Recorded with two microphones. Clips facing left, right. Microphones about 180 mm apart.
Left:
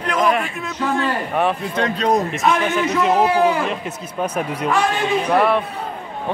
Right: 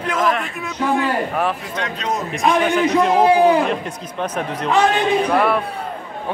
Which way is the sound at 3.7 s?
10° left (ahead or behind).